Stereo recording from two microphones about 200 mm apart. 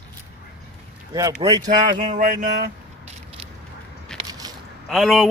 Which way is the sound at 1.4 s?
20° right (ahead or behind).